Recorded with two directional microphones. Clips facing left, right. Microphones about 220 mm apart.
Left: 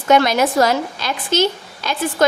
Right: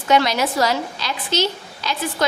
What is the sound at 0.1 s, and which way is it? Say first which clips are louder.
A woman's voice: left 4 dB; 50° left (ahead or behind).